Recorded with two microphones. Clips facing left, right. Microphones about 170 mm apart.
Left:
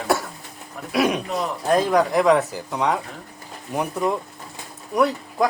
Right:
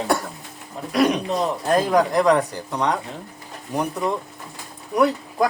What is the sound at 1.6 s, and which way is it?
Speech, centre (ahead or behind).